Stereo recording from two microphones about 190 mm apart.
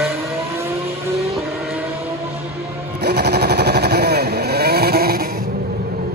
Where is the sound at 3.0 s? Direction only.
60° right (ahead or behind).